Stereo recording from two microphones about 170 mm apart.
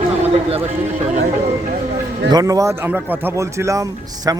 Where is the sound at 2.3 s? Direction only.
20° right (ahead or behind).